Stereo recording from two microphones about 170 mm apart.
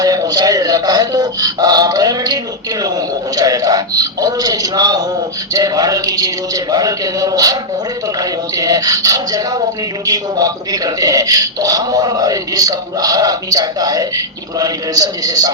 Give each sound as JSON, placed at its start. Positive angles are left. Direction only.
{"t": 0.0, "sound": "a man's voice", "side_deg": -20}